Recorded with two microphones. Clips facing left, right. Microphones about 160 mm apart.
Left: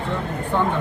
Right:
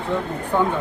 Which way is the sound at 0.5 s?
10° right (ahead or behind).